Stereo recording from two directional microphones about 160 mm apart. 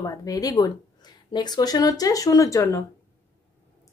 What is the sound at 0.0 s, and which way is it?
Speech, 20° left (ahead or behind).